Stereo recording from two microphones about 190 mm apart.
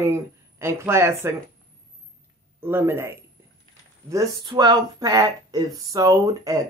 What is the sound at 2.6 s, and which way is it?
Speech, 10° right (ahead or behind).